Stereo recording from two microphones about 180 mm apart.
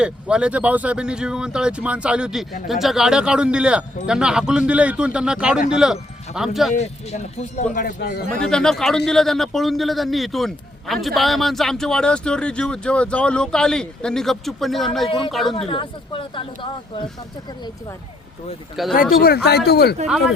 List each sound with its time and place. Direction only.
0.0 s speech: 5° right (ahead or behind)
6.7 s speech: 35° left (ahead or behind)
8.4 s speech: 5° left (ahead or behind)
15.5 s speech: 30° left (ahead or behind)
18.8 s speech: centre (ahead or behind)
19.2 s speech: 60° left (ahead or behind)